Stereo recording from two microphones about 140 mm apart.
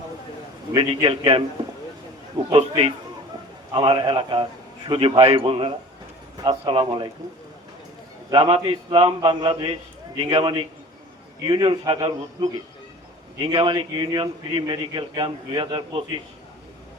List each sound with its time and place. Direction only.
0.8 s a man's voice: 35° right (ahead or behind)
2.6 s a man's voice: 45° right (ahead or behind)
8.3 s a man's voice: 35° right (ahead or behind)